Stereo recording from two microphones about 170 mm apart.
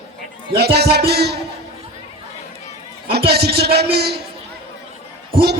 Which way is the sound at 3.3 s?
70° right (ahead or behind).